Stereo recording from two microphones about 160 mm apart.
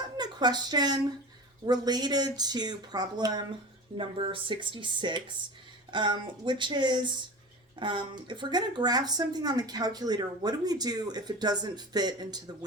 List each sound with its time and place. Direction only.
0.2 s speech: 25° right (ahead or behind)